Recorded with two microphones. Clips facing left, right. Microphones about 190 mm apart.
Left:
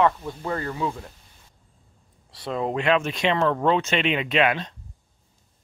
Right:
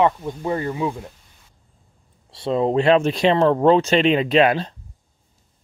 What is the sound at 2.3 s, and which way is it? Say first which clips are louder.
Speech: right 7 dB; 25° right (ahead or behind).